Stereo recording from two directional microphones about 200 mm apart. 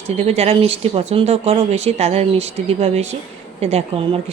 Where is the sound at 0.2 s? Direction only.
30° right (ahead or behind).